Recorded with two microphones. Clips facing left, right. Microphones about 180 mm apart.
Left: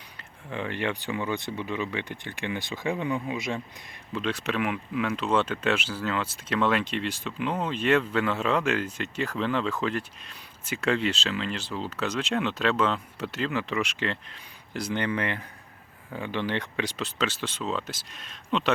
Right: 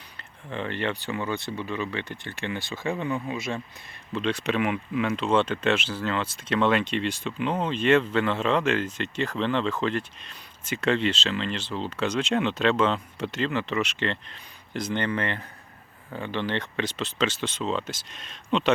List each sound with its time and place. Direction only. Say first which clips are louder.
0.2 s speech: right 1 dB; 10° left (ahead or behind)
4.1 s speech: right 3 dB; 5° left (ahead or behind)